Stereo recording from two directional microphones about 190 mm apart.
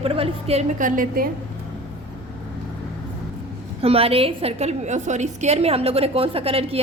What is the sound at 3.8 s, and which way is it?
A woman's voice, 30° right (ahead or behind).